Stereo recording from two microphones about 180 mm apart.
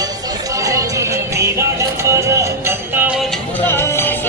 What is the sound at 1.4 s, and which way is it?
Music, 15° right (ahead or behind).